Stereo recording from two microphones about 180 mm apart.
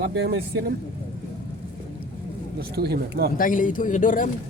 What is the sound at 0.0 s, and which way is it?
Speech, 70° right (ahead or behind).